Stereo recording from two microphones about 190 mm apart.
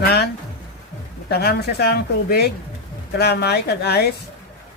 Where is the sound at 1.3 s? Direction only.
55° left (ahead or behind).